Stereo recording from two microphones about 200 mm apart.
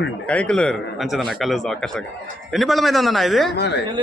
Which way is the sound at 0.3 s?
5° left (ahead or behind).